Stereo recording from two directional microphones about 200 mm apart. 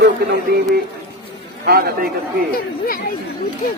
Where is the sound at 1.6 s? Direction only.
50° right (ahead or behind).